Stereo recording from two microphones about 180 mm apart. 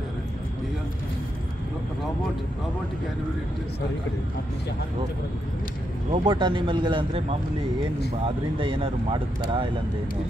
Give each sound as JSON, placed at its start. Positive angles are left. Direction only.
{"t": 6.1, "sound": "speech", "side_deg": -25}
{"t": 8.5, "sound": "speech", "side_deg": -30}